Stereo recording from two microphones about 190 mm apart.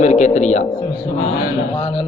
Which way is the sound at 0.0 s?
40° left (ahead or behind).